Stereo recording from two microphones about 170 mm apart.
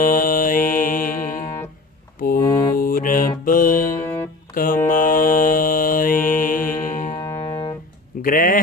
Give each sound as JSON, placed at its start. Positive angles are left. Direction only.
{"t": 0.0, "sound": "mantra", "side_deg": 55}
{"t": 2.4, "sound": "mantra", "side_deg": 20}
{"t": 2.7, "sound": "music", "side_deg": 55}
{"t": 4.5, "sound": "mantra", "side_deg": 55}
{"t": 6.8, "sound": "music", "side_deg": 50}
{"t": 7.3, "sound": "music", "side_deg": 25}
{"t": 8.2, "sound": "speech", "side_deg": 55}